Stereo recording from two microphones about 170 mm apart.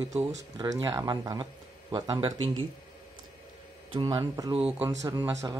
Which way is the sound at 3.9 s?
25° right (ahead or behind).